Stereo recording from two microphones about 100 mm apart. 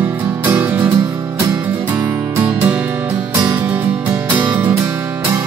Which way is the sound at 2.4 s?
15° right (ahead or behind).